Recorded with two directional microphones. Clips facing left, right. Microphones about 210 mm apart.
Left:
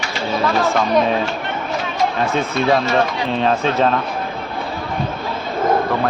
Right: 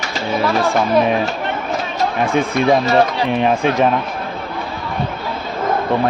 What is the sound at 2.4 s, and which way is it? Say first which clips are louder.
Speech: right 3 dB; 15° right (ahead or behind).